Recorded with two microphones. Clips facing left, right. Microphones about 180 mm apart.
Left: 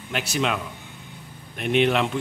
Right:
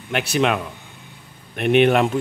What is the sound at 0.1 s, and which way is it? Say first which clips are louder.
Speech: right 5 dB; 60° right (ahead or behind).